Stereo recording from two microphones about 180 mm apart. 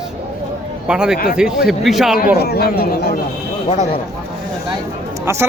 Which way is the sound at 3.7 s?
35° left (ahead or behind).